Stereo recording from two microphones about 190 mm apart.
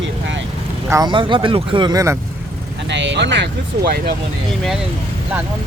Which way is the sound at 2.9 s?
70° right (ahead or behind).